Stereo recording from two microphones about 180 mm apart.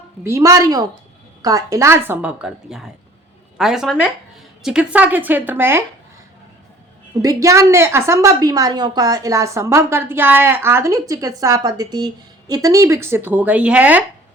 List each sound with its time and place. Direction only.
0.3 s a woman's voice: 15° right (ahead or behind)
7.2 s a woman's voice: 20° right (ahead or behind)